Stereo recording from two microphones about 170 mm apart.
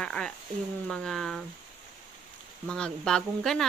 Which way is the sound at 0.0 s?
5° left (ahead or behind).